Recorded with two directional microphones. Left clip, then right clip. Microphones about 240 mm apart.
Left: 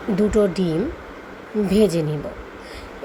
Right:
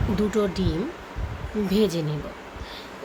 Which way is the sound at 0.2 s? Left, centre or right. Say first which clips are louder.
Left 6 dB; centre.